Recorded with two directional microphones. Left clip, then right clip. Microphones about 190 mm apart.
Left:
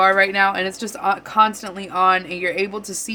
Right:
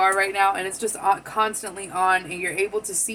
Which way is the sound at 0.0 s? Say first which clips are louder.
Left 4 dB; 60° left (ahead or behind).